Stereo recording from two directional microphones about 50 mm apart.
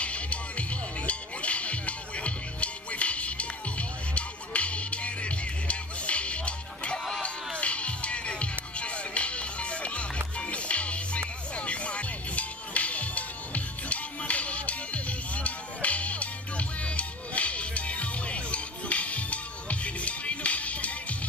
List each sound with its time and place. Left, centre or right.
0.0 s music: left